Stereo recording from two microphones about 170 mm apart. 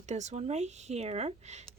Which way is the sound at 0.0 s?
45° right (ahead or behind).